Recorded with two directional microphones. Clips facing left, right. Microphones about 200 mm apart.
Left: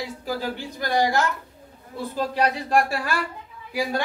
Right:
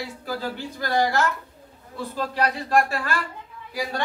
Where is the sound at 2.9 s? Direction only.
10° left (ahead or behind).